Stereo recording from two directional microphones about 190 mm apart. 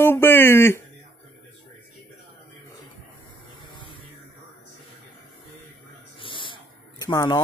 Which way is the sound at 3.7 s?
25° left (ahead or behind).